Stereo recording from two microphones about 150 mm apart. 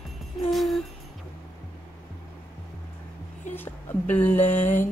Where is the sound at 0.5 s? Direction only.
Centre (ahead or behind).